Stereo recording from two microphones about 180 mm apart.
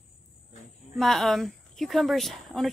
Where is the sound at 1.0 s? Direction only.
Centre (ahead or behind).